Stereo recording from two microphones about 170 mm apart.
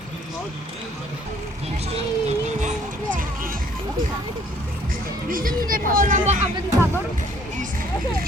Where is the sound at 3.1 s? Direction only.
55° right (ahead or behind).